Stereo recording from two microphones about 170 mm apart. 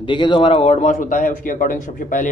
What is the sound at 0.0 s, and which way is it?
A man's voice, 30° left (ahead or behind).